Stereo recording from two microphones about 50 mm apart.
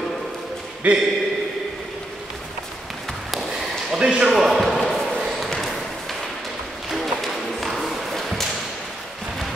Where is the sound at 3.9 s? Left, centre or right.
Centre.